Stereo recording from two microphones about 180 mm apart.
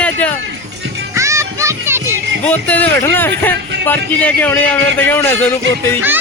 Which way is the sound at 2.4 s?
10° left (ahead or behind).